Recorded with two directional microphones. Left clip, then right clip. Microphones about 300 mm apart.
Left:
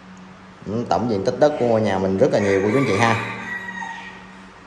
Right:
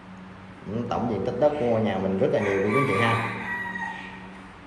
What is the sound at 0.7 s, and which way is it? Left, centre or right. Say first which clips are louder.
Speech: left 7 dB; left.